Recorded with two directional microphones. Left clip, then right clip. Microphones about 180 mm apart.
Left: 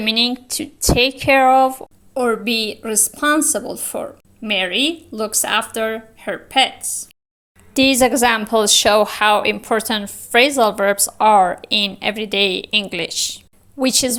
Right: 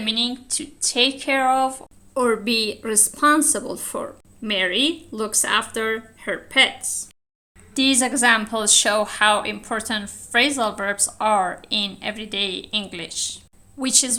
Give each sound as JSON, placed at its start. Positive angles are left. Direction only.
{"t": 0.0, "sound": "speech", "side_deg": 40}
{"t": 7.7, "sound": "a woman's voice", "side_deg": 35}